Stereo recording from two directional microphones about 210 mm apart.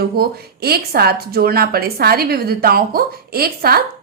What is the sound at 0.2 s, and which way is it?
A woman's voice, 50° right (ahead or behind).